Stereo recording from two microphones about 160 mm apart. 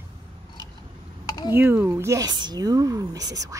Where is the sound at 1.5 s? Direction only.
15° right (ahead or behind).